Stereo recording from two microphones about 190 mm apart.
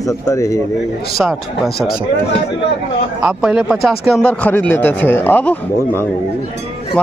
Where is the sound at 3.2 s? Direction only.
5° right (ahead or behind).